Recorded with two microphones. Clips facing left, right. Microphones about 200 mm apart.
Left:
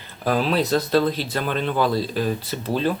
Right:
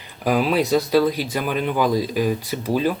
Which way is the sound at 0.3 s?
10° right (ahead or behind).